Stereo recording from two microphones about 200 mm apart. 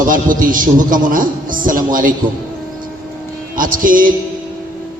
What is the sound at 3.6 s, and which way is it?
Speech, 45° right (ahead or behind).